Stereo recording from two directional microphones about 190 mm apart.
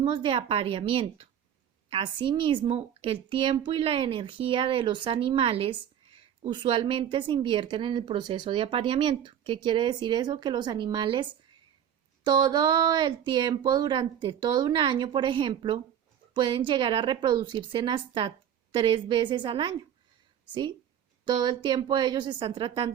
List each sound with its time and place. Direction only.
0.0 s speech: 25° right (ahead or behind)